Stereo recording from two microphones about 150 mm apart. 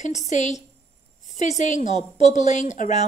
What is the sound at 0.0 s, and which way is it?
A woman's voice, 50° left (ahead or behind).